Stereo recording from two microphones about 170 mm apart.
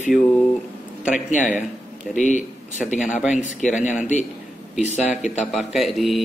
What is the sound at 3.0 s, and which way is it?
Speech, 5° right (ahead or behind).